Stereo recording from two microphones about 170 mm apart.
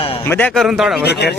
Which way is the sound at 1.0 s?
80° left.